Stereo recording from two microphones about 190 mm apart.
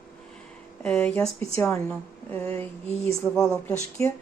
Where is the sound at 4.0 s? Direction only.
30° right (ahead or behind).